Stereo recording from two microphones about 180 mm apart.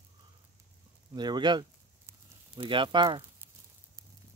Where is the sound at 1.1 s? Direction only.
25° right (ahead or behind).